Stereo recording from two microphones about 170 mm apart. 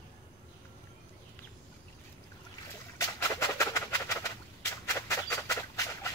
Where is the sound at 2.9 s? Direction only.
15° left (ahead or behind).